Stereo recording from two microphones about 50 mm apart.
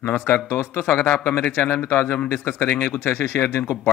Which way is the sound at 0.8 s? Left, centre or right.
Left.